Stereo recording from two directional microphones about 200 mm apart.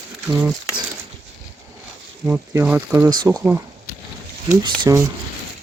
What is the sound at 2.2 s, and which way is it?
Speech, 5° right (ahead or behind).